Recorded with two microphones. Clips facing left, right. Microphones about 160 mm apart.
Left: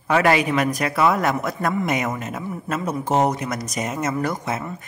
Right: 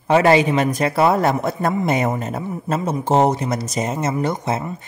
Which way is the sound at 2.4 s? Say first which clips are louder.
Right 2 dB; 25° right (ahead or behind).